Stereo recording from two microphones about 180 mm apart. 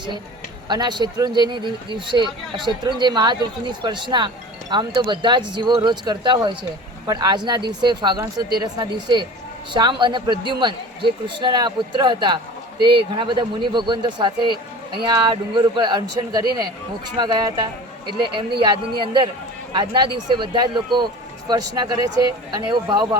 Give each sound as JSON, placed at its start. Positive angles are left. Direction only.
{"t": 0.7, "sound": "a man's voice", "side_deg": -25}